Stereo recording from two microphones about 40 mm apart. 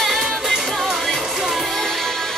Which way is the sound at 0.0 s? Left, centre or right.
Centre.